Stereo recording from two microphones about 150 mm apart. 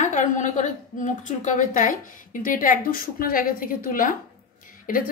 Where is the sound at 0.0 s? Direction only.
55° left (ahead or behind).